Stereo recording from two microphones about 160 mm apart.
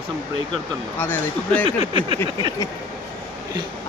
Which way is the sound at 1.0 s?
10° left (ahead or behind).